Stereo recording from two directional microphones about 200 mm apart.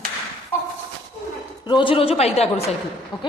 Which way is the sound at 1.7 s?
25° left (ahead or behind).